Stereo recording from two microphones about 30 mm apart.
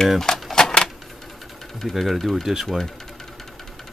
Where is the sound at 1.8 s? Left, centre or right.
Centre.